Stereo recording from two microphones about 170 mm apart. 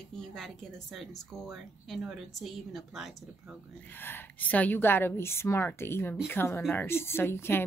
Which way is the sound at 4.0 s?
10° left (ahead or behind).